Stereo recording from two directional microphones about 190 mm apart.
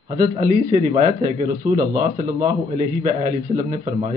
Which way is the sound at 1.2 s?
20° right (ahead or behind).